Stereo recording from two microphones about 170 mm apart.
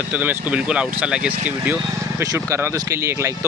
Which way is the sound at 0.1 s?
10° right (ahead or behind).